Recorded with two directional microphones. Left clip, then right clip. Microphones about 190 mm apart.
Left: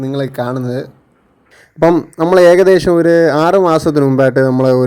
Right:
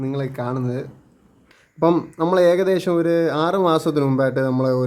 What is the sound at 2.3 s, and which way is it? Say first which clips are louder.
Speech: left 10 dB; 40° left (ahead or behind).